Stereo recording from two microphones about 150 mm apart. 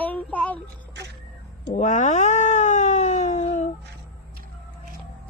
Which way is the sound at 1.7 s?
55° left (ahead or behind).